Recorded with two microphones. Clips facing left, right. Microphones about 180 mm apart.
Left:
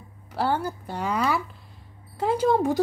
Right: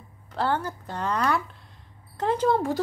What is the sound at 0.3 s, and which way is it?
A woman's voice, 10° left (ahead or behind).